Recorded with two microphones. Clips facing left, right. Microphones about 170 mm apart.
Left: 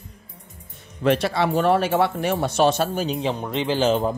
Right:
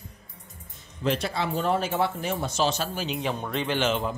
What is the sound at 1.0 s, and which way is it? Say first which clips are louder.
Speech: left 7 dB; 70° left (ahead or behind).